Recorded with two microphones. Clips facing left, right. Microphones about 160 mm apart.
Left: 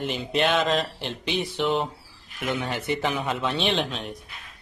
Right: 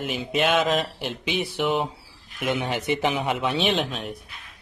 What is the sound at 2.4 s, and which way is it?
Speech, 15° right (ahead or behind).